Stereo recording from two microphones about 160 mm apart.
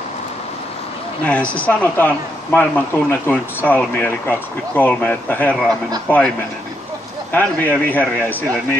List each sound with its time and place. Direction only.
1.2 s speech: 10° left (ahead or behind)
7.3 s speech: 10° left (ahead or behind)